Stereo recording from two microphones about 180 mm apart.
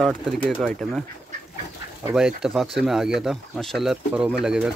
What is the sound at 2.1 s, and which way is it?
Speech, 5° right (ahead or behind).